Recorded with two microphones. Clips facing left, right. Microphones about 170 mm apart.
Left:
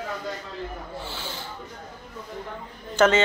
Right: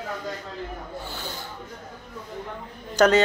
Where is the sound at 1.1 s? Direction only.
45° right (ahead or behind).